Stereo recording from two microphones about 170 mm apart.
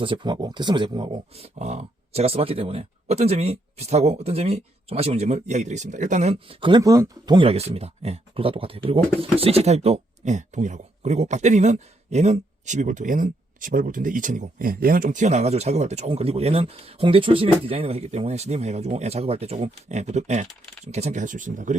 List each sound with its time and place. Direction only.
0.0 s speech: 30° right (ahead or behind); by 21.8 s 50° right (ahead or behind)